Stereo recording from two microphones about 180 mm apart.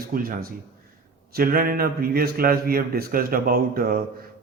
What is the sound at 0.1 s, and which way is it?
Speech, 55° right (ahead or behind).